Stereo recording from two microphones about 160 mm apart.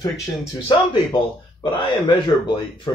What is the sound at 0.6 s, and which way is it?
Speech, 30° left (ahead or behind).